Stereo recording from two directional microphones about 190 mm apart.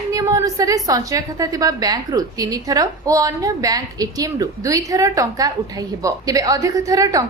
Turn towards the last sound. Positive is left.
turn(degrees=-15)  # may be behind; listen again after turning